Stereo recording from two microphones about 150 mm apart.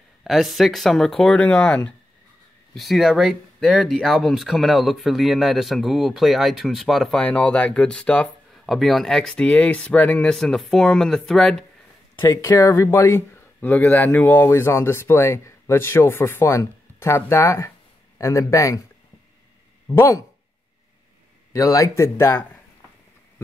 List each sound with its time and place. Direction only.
0.2 s speech: centre (ahead or behind)
12.2 s speech: 20° left (ahead or behind)
19.9 s speech: 20° left (ahead or behind)
21.5 s speech: 20° left (ahead or behind)